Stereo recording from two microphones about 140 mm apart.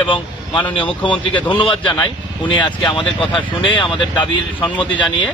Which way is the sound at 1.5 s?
35° left (ahead or behind).